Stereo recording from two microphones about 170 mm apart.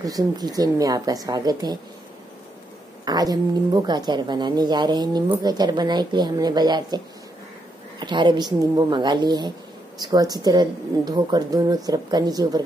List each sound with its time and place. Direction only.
0.0 s speech: 20° right (ahead or behind)
3.1 s speech: 20° right (ahead or behind)
8.0 s speech: 25° right (ahead or behind)